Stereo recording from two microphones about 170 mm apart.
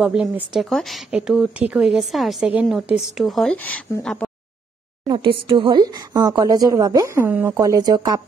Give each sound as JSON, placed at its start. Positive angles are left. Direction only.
{"t": 0.0, "sound": "a woman's voice", "side_deg": -5}
{"t": 5.0, "sound": "speech", "side_deg": -30}